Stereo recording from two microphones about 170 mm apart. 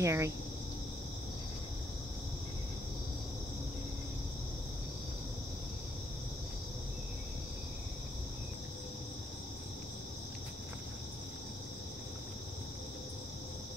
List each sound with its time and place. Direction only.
0.0 s speech: 15° right (ahead or behind)